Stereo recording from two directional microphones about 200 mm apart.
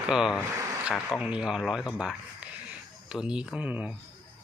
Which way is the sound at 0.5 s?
15° right (ahead or behind).